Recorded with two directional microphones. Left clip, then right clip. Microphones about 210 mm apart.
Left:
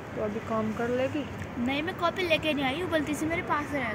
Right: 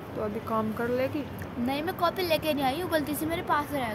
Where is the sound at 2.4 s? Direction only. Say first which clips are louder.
Right 1 dB; 35° right (ahead or behind).